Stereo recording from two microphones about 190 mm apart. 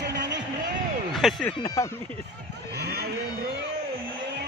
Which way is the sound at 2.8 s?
55° right (ahead or behind).